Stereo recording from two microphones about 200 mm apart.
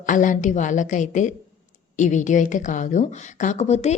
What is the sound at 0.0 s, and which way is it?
Speech, 40° left (ahead or behind).